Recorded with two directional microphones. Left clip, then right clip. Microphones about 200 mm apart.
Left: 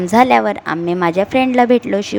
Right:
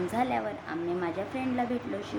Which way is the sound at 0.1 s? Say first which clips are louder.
Left 18 dB; 55° left (ahead or behind).